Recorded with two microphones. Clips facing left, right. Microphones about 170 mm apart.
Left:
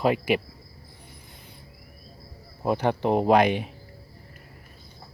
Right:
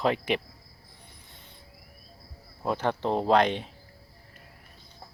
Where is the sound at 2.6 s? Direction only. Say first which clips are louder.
Left 4 dB; 15° left (ahead or behind).